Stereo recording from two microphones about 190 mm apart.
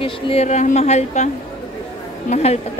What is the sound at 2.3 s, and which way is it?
Speech, 35° left (ahead or behind).